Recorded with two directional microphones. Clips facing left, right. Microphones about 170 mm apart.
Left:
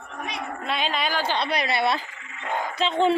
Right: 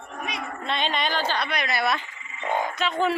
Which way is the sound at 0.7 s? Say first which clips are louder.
Even; 5° left (ahead or behind).